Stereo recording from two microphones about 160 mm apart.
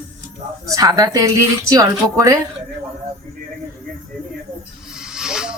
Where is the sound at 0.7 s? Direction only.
20° right (ahead or behind).